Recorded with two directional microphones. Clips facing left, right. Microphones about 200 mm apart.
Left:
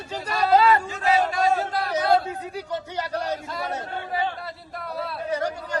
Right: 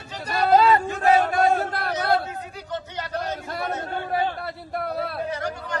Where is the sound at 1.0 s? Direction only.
55° right (ahead or behind).